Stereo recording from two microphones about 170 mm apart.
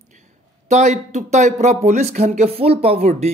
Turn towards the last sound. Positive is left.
turn(degrees=-40)  # may be behind; listen again after turning